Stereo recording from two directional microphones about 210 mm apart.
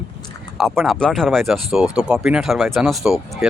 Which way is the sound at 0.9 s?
5° left (ahead or behind).